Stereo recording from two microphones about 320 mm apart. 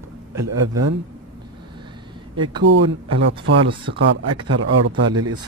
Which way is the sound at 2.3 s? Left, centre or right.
Centre.